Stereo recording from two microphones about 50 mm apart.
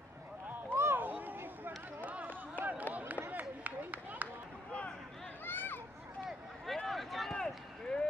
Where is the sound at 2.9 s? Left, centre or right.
Right.